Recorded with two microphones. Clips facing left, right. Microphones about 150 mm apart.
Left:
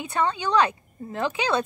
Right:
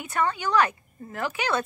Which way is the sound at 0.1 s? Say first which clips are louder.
Left 1 dB; 20° left (ahead or behind).